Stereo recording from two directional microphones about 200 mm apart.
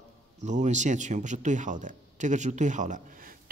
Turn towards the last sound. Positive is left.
turn(degrees=-45)  # may be behind; listen again after turning